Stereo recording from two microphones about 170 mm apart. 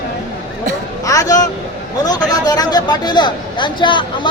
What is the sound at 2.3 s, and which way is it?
Speech, 25° left (ahead or behind).